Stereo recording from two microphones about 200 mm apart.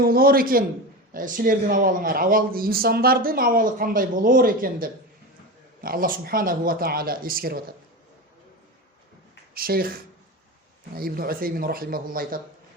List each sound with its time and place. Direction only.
0.0 s speech: 45° right (ahead or behind)
9.6 s speech: 45° right (ahead or behind)
10.9 s speech: 50° right (ahead or behind)